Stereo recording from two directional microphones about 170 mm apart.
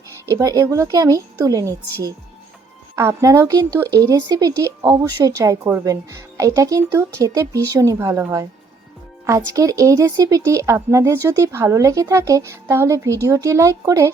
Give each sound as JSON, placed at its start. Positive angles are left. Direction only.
{"t": 0.3, "sound": "speech", "side_deg": -20}
{"t": 2.9, "sound": "speech", "side_deg": -15}